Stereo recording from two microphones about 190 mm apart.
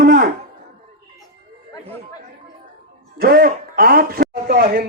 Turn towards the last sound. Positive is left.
turn(degrees=-50)  # may be behind; listen again after turning